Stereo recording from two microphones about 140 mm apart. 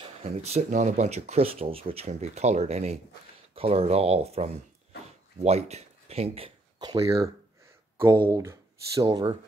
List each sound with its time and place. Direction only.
0.0 s speech: 50° right (ahead or behind)
6.8 s speech: 25° right (ahead or behind)
8.3 s speech: 20° right (ahead or behind)